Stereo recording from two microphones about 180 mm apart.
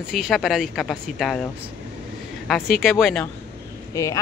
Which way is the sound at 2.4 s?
Centre (ahead or behind).